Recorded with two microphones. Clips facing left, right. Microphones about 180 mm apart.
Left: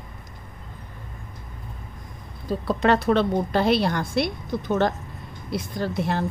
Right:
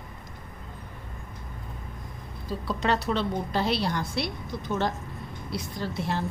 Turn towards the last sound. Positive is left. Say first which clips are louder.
# left 5 dB
turn(degrees=55)  # may be behind; listen again after turning